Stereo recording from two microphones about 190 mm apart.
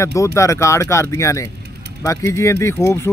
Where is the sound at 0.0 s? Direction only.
15° left (ahead or behind).